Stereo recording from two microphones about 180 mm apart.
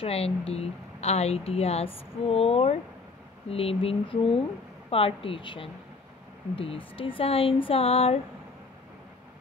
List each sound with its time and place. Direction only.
0.0 s speech: 35° left (ahead or behind)